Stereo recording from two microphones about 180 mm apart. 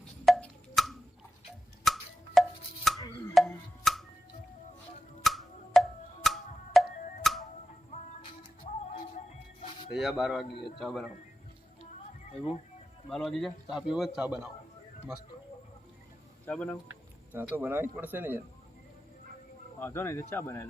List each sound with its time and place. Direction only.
0.3 s a sound: 5° left (ahead or behind)
1.8 s music: centre (ahead or behind)
5.2 s music: centre (ahead or behind)
8.6 s music: 40° left (ahead or behind)
9.9 s a man's voice: centre (ahead or behind)
13.1 s a man's voice: centre (ahead or behind)
16.5 s speech: 5° left (ahead or behind)
17.3 s speech: 10° right (ahead or behind)
19.8 s speech: 15° left (ahead or behind)